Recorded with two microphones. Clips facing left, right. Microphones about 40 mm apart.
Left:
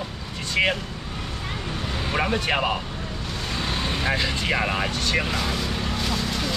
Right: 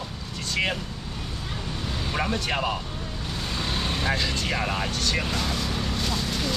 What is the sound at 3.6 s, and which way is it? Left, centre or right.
Vehicle, centre.